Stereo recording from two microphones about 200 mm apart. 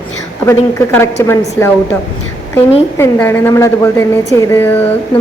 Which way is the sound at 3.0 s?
10° left (ahead or behind).